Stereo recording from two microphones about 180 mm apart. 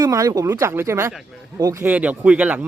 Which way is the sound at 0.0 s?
20° right (ahead or behind).